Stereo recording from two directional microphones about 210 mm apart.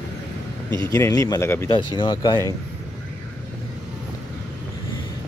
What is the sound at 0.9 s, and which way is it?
Speech, 15° left (ahead or behind).